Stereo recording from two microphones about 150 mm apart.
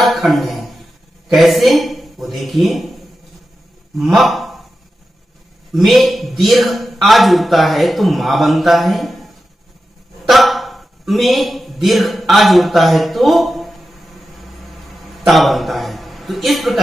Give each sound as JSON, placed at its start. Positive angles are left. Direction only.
{"t": 0.0, "sound": "a sound", "side_deg": 0}
{"t": 1.3, "sound": "a man's voice", "side_deg": 0}
{"t": 4.0, "sound": "a man's voice", "side_deg": 0}
{"t": 5.9, "sound": "speech", "side_deg": 0}
{"t": 15.1, "sound": "a man's voice", "side_deg": 0}